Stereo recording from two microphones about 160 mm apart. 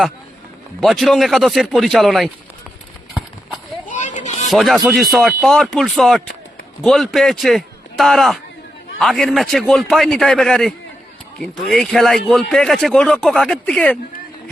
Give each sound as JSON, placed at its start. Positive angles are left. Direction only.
{"t": 0.8, "sound": "a man's voice", "side_deg": 0}
{"t": 3.8, "sound": "a sound", "side_deg": 50}
{"t": 4.5, "sound": "a man's voice", "side_deg": 0}